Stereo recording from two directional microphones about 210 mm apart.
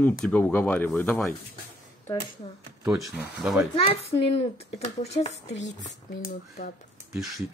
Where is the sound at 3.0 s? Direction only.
Centre (ahead or behind).